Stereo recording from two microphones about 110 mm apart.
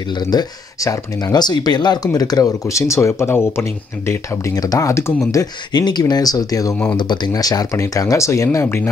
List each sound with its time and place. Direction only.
0.2 s speech: 40° left (ahead or behind); by 8.9 s 20° left (ahead or behind)